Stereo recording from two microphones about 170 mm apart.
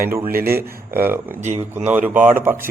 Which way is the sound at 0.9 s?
10° right (ahead or behind).